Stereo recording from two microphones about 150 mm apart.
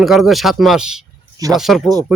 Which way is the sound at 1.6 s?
Centre (ahead or behind).